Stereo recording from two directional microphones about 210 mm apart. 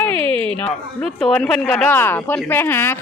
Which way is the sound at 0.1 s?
25° right (ahead or behind).